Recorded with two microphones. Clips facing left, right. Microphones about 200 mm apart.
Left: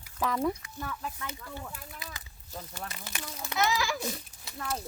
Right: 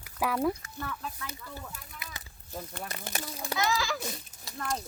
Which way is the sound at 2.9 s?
40° right (ahead or behind).